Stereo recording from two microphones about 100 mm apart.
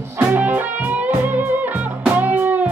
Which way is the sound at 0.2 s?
15° right (ahead or behind).